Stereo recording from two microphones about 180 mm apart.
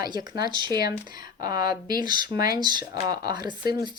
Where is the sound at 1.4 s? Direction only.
20° right (ahead or behind).